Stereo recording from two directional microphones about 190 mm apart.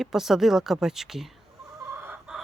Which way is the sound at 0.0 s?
Centre (ahead or behind).